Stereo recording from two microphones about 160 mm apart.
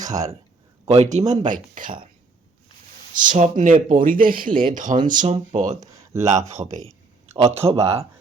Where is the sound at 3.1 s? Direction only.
55° right (ahead or behind).